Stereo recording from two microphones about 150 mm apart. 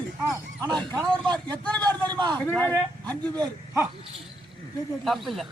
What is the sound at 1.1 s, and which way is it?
Speech, 5° left (ahead or behind).